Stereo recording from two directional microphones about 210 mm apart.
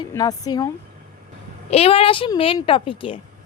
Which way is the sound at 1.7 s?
25° left (ahead or behind).